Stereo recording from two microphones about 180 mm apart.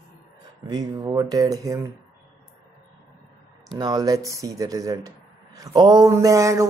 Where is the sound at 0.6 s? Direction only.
20° right (ahead or behind).